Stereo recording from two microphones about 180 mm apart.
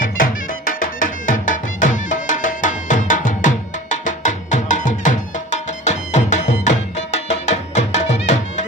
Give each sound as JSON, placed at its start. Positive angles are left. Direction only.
{"t": 0.0, "sound": "music", "side_deg": 50}